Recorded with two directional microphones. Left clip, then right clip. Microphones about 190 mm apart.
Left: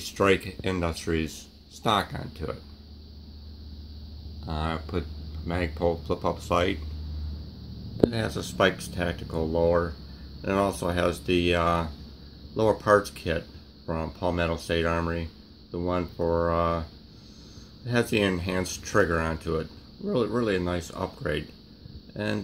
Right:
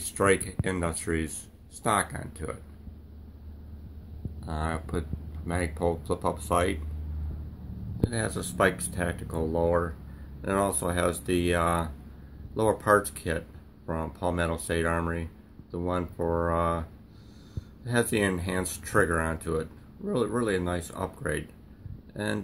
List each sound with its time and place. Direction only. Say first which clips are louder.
0.0 s speech: left 1 dB; 10° left (ahead or behind)
4.5 s speech: left 1 dB; 15° left (ahead or behind)
8.1 s speech: left 1 dB; 10° left (ahead or behind)
17.8 s speech: left 1 dB; 10° left (ahead or behind)